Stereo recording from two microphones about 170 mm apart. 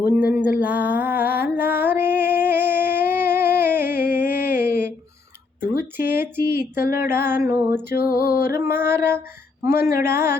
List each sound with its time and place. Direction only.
0.0 s music: 10° right (ahead or behind)
6.0 s speech: 15° right (ahead or behind)
6.8 s music: 65° left (ahead or behind)
7.1 s speech: 15° right (ahead or behind)
7.9 s music: 65° left (ahead or behind)
8.4 s speech: 15° right (ahead or behind)